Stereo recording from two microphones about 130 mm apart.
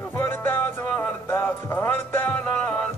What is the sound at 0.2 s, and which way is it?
Music, 15° left (ahead or behind).